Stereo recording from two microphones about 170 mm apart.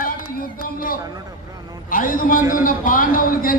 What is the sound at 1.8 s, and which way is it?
A man's voice, 55° left (ahead or behind).